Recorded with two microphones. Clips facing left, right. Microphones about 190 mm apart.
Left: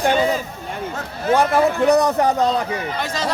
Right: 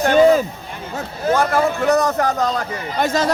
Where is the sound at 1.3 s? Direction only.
15° left (ahead or behind).